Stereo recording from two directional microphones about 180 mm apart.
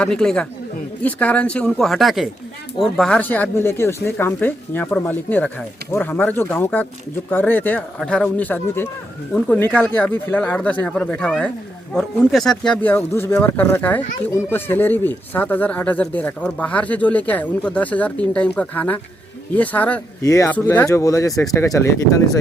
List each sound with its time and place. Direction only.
0.0 s speech: 5° left (ahead or behind)